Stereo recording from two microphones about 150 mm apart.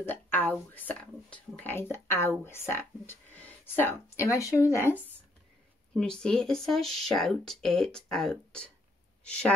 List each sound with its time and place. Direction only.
0.0 s speech: 15° left (ahead or behind)
5.9 s speech: 5° left (ahead or behind)